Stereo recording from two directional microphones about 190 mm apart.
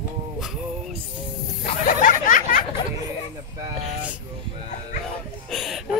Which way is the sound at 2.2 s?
45° left (ahead or behind).